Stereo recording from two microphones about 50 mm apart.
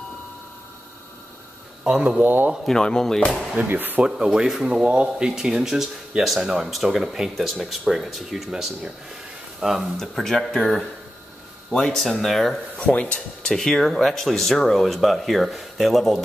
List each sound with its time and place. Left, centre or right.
1.9 s speech: centre
2.1 s speech: right
2.6 s speech: centre
3.6 s speech: right
4.0 s speech: centre
4.6 s speech: right; by 9.9 s centre
9.9 s speech: centre
12.0 s speech: centre
12.7 s speech: left
13.6 s speech: centre